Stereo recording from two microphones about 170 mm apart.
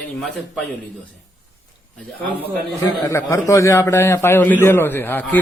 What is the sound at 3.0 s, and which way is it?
A man's voice, 20° left (ahead or behind).